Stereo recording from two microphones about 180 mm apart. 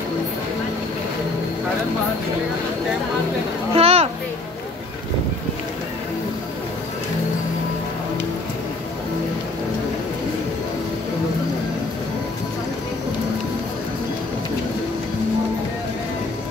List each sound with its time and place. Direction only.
3.7 s a child's voice: 35° right (ahead or behind)